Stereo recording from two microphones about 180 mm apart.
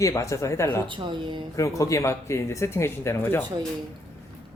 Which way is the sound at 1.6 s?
15° left (ahead or behind).